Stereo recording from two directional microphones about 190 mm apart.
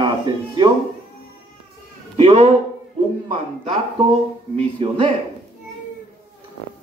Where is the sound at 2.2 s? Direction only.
30° right (ahead or behind).